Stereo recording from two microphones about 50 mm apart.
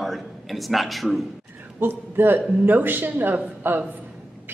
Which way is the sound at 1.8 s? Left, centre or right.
Right.